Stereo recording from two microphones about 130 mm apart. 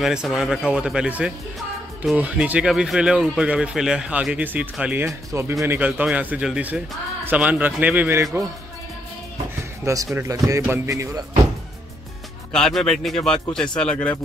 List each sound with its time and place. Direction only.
0.0 s speech: 5° right (ahead or behind); by 5.8 s 20° right (ahead or behind)
5.8 s speech: 10° right (ahead or behind)
9.6 s music: 20° right (ahead or behind)
10.1 s speech: 25° right (ahead or behind)
12.5 s speech: 5° left (ahead or behind)